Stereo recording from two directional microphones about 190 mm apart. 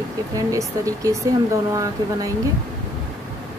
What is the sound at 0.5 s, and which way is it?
A woman's voice, 15° right (ahead or behind).